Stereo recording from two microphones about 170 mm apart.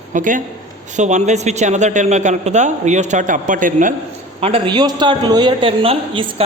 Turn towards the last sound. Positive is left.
turn(degrees=-30)  # may be behind; listen again after turning